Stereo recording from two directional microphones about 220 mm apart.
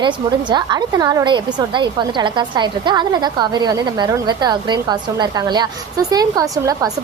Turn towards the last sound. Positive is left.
turn(degrees=-15)  # may be behind; listen again after turning